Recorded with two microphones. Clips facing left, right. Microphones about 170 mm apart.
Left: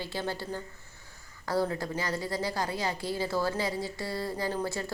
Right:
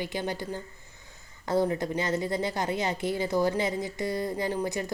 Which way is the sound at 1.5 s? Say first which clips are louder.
Right 4 dB; 20° right (ahead or behind).